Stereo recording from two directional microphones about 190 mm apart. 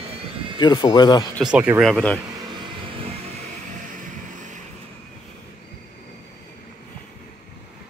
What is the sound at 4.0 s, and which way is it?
Music, 40° right (ahead or behind).